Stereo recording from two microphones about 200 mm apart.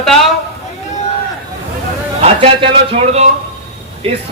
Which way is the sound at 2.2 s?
25° right (ahead or behind).